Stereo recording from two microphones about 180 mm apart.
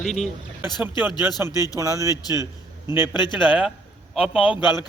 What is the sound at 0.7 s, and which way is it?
Speech, 25° left (ahead or behind).